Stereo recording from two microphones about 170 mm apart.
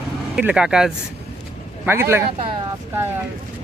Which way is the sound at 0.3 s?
5° right (ahead or behind).